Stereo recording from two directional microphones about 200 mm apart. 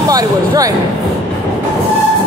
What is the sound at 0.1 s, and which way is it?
Speech, 20° right (ahead or behind).